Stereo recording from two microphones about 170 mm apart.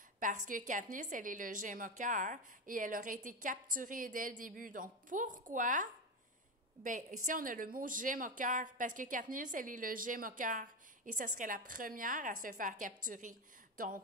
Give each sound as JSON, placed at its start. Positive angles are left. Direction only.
{"t": 0.2, "sound": "a woman's voice", "side_deg": -50}